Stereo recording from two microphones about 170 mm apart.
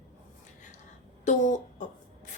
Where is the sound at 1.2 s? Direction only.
45° left (ahead or behind).